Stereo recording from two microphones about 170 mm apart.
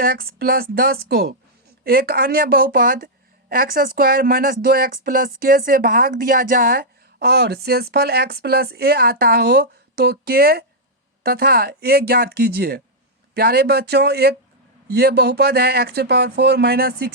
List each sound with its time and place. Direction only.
0.0 s speech: 60° right (ahead or behind)